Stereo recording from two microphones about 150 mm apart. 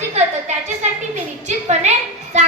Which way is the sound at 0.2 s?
45° right (ahead or behind).